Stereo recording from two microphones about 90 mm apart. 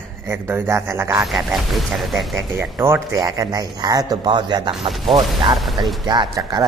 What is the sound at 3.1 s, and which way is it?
Speech, 45° right (ahead or behind).